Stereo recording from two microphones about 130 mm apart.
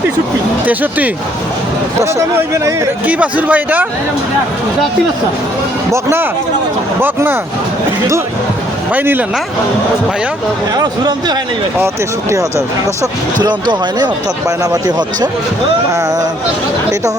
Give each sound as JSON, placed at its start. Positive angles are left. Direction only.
{"t": 0.6, "sound": "speech", "side_deg": -15}
{"t": 3.1, "sound": "speech", "side_deg": -10}
{"t": 5.9, "sound": "speech", "side_deg": -20}
{"t": 8.9, "sound": "speech", "side_deg": -15}
{"t": 10.8, "sound": "speech", "side_deg": -35}
{"t": 13.4, "sound": "speech", "side_deg": -35}